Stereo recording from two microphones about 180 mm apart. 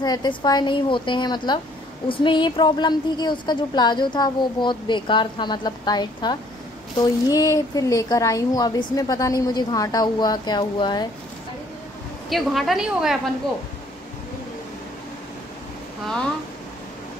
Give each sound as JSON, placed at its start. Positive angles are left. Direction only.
{"t": 0.0, "sound": "a woman's voice", "side_deg": 25}
{"t": 12.3, "sound": "a woman's voice", "side_deg": 0}